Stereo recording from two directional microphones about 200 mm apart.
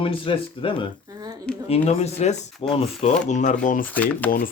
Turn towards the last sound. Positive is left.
turn(degrees=45)  # may be behind; listen again after turning